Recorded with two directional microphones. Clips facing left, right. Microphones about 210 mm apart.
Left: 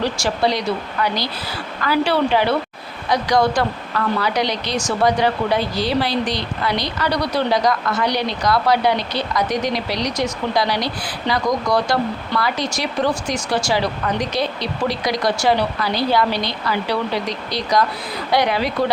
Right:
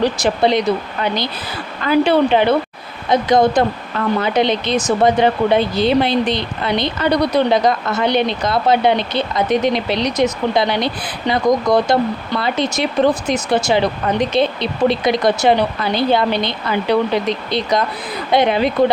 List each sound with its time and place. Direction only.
0.0 s speech: 20° right (ahead or behind)